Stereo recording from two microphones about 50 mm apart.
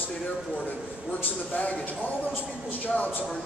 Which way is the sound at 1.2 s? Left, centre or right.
Left.